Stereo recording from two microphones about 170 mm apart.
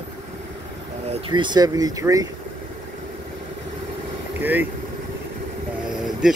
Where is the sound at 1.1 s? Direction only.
25° right (ahead or behind).